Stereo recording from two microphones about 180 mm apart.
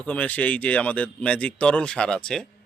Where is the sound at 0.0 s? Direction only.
10° left (ahead or behind).